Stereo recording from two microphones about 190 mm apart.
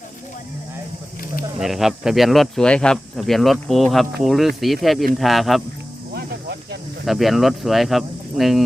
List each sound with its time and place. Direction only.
1.5 s speech: centre (ahead or behind)
6.1 s music: 55° right (ahead or behind)
7.0 s speech: centre (ahead or behind)